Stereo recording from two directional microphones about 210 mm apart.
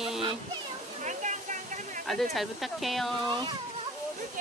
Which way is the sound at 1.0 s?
35° right (ahead or behind).